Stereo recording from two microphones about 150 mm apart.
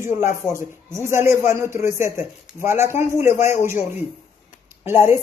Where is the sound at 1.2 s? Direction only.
15° right (ahead or behind).